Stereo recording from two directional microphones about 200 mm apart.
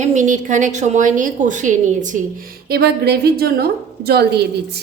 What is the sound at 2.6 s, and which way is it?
A woman's voice, 50° right (ahead or behind).